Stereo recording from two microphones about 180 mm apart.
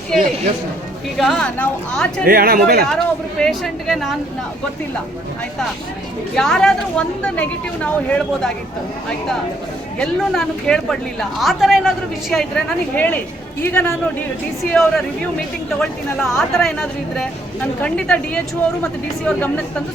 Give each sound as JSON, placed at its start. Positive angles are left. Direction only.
{"t": 1.2, "sound": "a woman's voice", "side_deg": 0}
{"t": 2.2, "sound": "speech", "side_deg": -55}
{"t": 2.9, "sound": "a woman's voice", "side_deg": 5}
{"t": 6.3, "sound": "a woman's voice", "side_deg": 5}
{"t": 10.0, "sound": "a woman's voice", "side_deg": 5}